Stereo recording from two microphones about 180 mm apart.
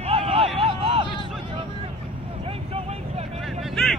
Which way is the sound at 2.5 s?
35° right (ahead or behind).